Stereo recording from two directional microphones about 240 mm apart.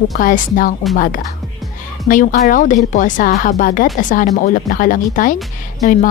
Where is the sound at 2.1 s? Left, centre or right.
Left.